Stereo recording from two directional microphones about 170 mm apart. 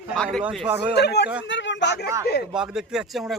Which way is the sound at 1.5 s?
90° left.